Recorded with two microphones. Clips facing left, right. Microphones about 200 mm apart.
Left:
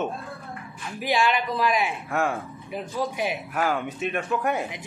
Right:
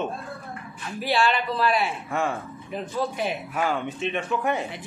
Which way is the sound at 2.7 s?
10° left (ahead or behind).